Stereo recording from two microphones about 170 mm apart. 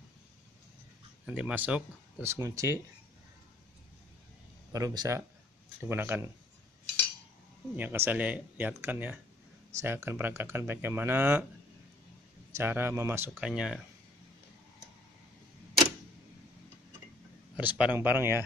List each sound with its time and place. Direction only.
1.2 s speech: 10° right (ahead or behind)
4.7 s speech: 20° right (ahead or behind)
7.7 s speech: 10° right (ahead or behind)
12.5 s speech: 10° right (ahead or behind)
13.3 s speech: 5° right (ahead or behind)
17.6 s speech: 10° right (ahead or behind)